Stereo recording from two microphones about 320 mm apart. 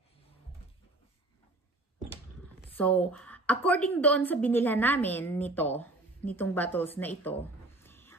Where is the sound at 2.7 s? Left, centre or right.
Centre.